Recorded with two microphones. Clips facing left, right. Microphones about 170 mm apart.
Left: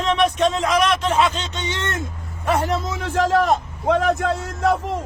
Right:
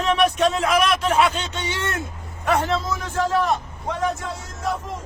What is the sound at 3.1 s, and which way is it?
A man's voice, 90° left.